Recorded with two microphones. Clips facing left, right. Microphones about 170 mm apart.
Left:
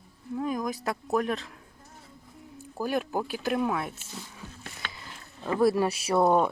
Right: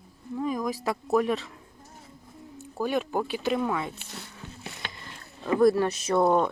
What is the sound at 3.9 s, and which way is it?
Speech, 70° right (ahead or behind).